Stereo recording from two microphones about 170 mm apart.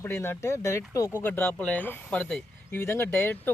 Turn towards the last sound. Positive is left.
turn(degrees=10)  # may be behind; listen again after turning